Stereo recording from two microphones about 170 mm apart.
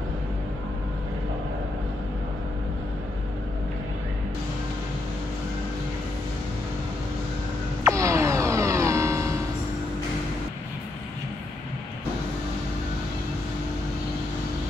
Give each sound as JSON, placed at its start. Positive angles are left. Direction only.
{"t": 7.8, "sound": "music", "side_deg": -20}